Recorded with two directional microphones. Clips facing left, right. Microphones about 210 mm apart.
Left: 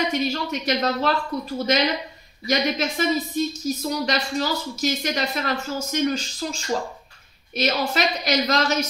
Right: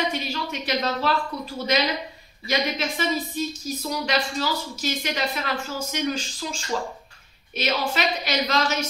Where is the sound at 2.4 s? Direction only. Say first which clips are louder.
Left 3 dB; 45° left (ahead or behind).